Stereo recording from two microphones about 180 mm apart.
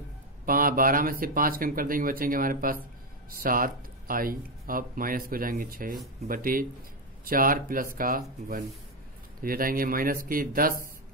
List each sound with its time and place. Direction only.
0.5 s speech: 50° right (ahead or behind)